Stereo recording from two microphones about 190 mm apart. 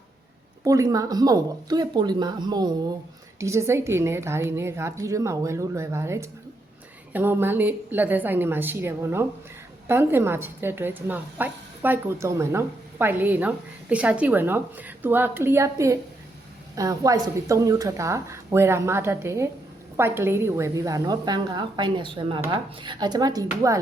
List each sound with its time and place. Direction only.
0.6 s a woman's voice: 15° right (ahead or behind)